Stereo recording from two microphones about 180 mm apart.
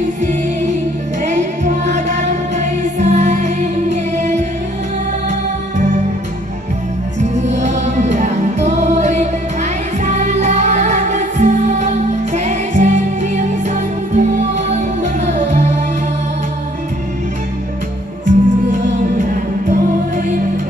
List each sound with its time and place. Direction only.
1.2 s music: 40° right (ahead or behind)
7.2 s music: 40° right (ahead or behind)
18.2 s music: 45° right (ahead or behind)